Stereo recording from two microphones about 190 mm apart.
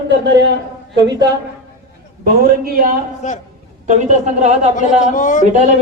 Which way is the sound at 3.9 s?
40° right (ahead or behind).